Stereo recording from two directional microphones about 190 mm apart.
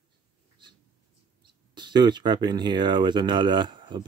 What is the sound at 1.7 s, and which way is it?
Speech, 25° right (ahead or behind).